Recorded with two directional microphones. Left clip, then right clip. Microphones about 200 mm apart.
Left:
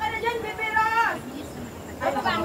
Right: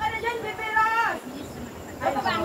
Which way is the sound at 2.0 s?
25° left (ahead or behind).